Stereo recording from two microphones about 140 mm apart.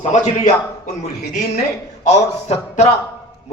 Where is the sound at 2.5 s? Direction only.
55° left (ahead or behind).